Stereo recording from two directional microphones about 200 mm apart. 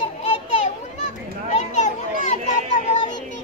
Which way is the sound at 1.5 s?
35° left (ahead or behind).